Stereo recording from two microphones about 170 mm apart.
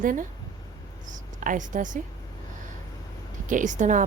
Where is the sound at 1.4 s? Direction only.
50° right (ahead or behind).